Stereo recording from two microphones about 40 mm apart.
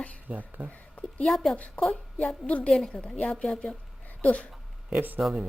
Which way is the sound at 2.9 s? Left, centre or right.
Left.